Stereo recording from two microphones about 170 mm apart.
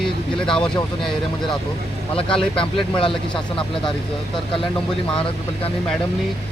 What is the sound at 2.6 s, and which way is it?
Speech, 30° left (ahead or behind).